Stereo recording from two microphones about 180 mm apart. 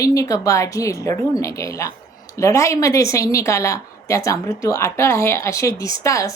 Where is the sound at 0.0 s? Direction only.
20° left (ahead or behind).